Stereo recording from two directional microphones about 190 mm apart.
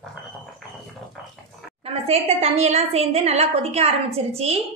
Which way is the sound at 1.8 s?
30° right (ahead or behind).